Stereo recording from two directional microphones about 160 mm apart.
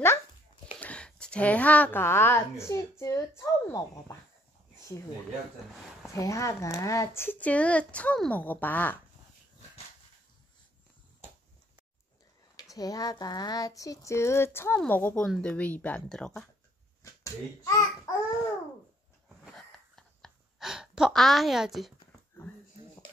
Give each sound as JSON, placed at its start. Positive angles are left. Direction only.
{"t": 0.7, "sound": "speech", "side_deg": 10}
{"t": 6.1, "sound": "speech", "side_deg": 20}
{"t": 12.5, "sound": "a sound", "side_deg": 25}
{"t": 14.8, "sound": "speech", "side_deg": 10}
{"t": 17.0, "sound": "babbling", "side_deg": 20}
{"t": 19.4, "sound": "gasp", "side_deg": 0}